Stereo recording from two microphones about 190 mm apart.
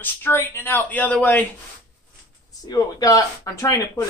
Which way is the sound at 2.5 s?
20° left (ahead or behind).